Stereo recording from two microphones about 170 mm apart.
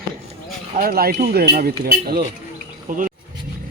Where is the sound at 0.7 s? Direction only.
60° right (ahead or behind).